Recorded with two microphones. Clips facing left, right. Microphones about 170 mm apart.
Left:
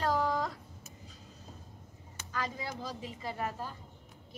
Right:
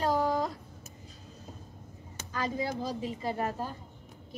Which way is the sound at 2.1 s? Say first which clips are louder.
Right 4 dB; 30° right (ahead or behind).